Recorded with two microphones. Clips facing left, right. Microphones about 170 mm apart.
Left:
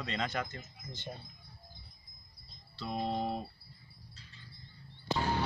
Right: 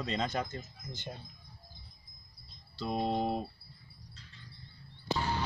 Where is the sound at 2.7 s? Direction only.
30° right (ahead or behind).